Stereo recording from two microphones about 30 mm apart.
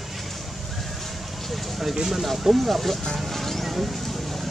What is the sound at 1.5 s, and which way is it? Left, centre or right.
Speech, centre.